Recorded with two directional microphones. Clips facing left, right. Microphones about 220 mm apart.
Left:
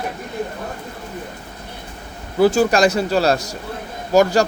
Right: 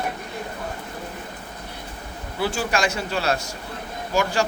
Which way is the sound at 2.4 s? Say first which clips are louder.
Left 10 dB; 40° left (ahead or behind).